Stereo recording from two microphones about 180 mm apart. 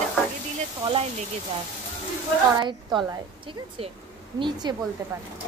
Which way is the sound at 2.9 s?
25° right (ahead or behind).